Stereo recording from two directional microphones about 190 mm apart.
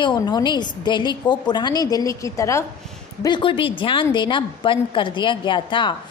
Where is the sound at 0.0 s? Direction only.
25° left (ahead or behind).